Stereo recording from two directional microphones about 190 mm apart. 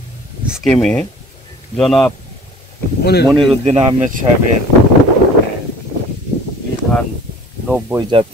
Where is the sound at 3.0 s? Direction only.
55° left (ahead or behind).